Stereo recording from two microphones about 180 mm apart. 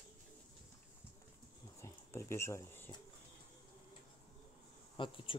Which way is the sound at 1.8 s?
15° left (ahead or behind).